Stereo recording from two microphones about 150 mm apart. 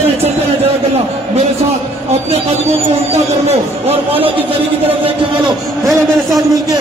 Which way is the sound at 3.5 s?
40° right (ahead or behind).